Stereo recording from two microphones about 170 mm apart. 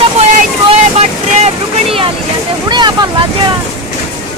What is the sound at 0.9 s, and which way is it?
Boat, 35° right (ahead or behind).